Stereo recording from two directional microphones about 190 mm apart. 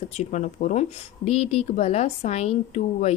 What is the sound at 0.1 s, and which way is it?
A woman's voice, 35° left (ahead or behind).